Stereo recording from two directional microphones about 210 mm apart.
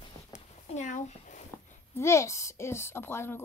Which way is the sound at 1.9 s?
15° left (ahead or behind).